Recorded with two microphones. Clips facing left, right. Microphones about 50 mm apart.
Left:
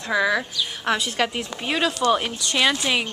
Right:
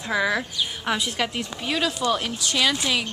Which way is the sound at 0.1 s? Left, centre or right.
Centre.